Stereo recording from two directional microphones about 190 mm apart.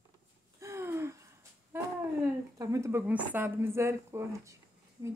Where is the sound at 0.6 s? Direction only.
15° right (ahead or behind).